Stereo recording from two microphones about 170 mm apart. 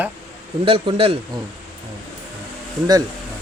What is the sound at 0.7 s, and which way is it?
Speech, 30° right (ahead or behind).